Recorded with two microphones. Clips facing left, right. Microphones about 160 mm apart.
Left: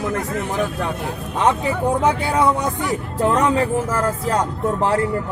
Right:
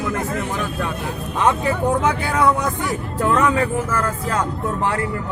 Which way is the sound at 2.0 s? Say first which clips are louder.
Left 1 dB; 30° left (ahead or behind).